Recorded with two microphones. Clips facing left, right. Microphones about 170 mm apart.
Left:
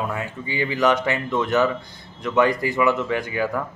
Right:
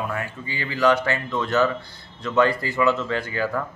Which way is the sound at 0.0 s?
20° left (ahead or behind).